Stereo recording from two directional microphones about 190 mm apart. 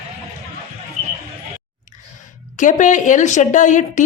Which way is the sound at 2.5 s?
40° left (ahead or behind).